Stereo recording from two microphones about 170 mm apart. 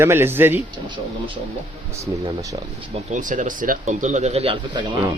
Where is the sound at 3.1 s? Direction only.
50° right (ahead or behind).